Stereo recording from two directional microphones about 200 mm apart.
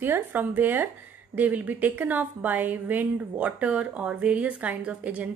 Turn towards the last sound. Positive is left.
turn(degrees=-5)  # may be behind; listen again after turning